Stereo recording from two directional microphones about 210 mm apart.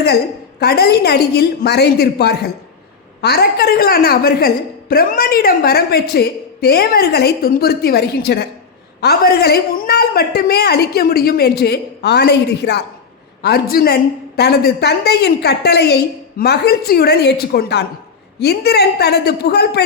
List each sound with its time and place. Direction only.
0.6 s a woman's voice: 50° left (ahead or behind)